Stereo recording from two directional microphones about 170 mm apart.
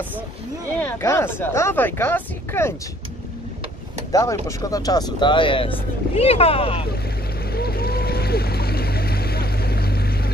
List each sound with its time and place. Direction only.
0.7 s speech: 15° left (ahead or behind)
4.1 s speech: 20° left (ahead or behind); by 6.9 s 35° left (ahead or behind)
7.5 s a sound: 65° left (ahead or behind)